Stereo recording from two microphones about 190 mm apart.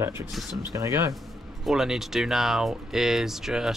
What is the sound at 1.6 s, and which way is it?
Speech, centre (ahead or behind).